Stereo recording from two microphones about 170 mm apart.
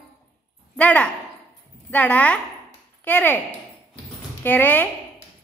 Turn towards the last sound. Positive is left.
turn(degrees=10)  # may be behind; listen again after turning